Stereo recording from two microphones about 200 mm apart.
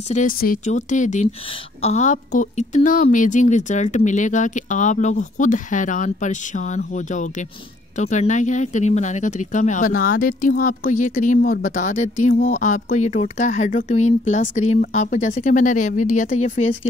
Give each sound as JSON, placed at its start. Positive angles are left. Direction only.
{"t": 0.1, "sound": "speech", "side_deg": 40}